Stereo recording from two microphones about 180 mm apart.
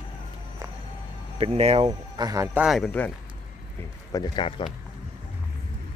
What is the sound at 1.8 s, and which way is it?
Speech, 20° right (ahead or behind).